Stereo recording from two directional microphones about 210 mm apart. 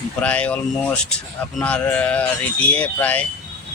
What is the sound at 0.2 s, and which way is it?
Speech, 5° left (ahead or behind).